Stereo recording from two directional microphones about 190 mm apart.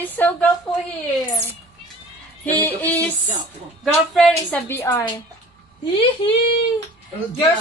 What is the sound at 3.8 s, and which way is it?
Speech, centre (ahead or behind).